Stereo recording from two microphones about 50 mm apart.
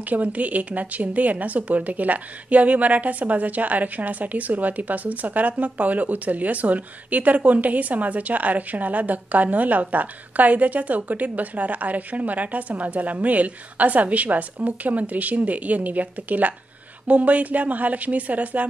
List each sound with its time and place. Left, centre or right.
0.0 s speech: right